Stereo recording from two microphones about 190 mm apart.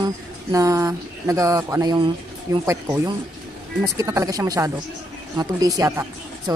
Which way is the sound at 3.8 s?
15° right (ahead or behind).